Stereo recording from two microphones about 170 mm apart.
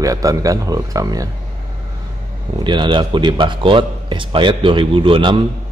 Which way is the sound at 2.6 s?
30° right (ahead or behind).